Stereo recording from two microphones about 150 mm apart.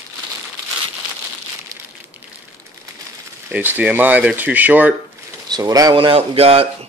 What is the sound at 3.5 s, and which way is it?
Speech, 10° right (ahead or behind).